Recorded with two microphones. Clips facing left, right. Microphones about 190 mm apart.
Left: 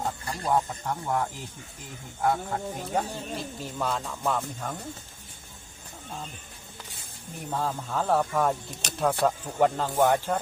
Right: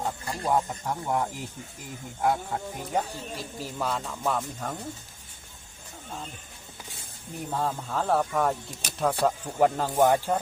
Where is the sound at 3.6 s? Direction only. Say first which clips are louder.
Right 1 dB; centre (ahead or behind).